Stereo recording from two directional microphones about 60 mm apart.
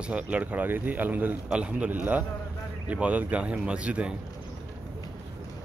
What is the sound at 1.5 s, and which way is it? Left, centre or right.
Speech, centre.